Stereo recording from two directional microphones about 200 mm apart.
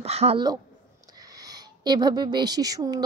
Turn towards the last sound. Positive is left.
turn(degrees=-20)  # may be behind; listen again after turning